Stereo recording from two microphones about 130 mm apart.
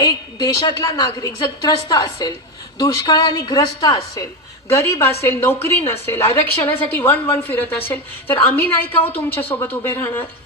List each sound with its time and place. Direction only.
0.0 s a woman's voice: 30° left (ahead or behind)